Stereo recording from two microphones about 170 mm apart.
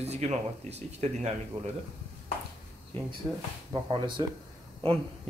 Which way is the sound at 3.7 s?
30° right (ahead or behind).